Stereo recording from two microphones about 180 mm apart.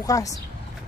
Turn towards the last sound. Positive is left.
turn(degrees=20)  # may be behind; listen again after turning